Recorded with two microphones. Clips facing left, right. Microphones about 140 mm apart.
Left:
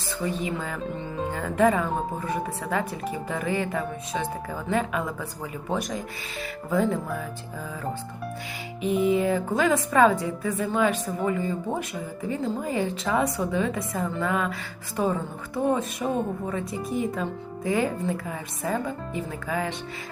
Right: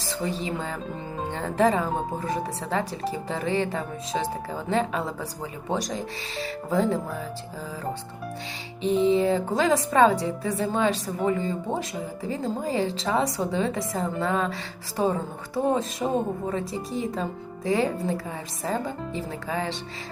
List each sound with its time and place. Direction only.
0.1 s speech: 30° right (ahead or behind)
6.4 s speech: 30° right (ahead or behind)
8.8 s speech: 30° right (ahead or behind)